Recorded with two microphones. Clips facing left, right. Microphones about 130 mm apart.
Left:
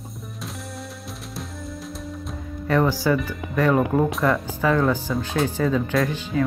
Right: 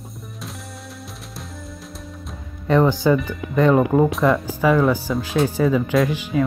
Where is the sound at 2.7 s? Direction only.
20° right (ahead or behind).